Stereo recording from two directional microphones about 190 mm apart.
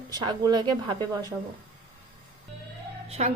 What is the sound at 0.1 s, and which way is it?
Speech, 20° right (ahead or behind).